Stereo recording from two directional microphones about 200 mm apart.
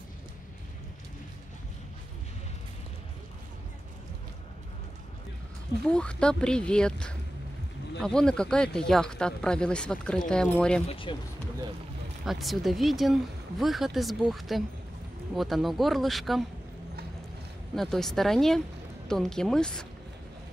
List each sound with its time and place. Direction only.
5.9 s speech: 5° left (ahead or behind)
10.9 s speech: 25° left (ahead or behind)
12.3 s speech: centre (ahead or behind)
17.7 s speech: centre (ahead or behind)